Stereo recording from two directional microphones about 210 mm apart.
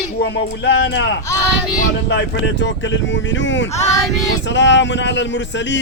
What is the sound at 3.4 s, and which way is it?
Speech, 60° left (ahead or behind).